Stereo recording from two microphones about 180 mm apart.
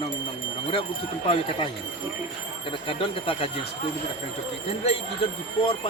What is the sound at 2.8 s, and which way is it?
Speech, 30° left (ahead or behind).